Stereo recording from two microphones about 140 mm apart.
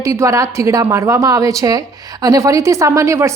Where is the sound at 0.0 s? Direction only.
20° right (ahead or behind).